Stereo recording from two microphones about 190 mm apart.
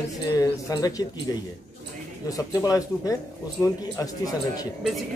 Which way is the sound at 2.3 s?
20° left (ahead or behind).